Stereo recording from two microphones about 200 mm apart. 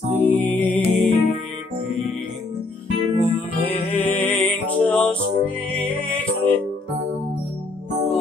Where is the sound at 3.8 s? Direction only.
10° left (ahead or behind).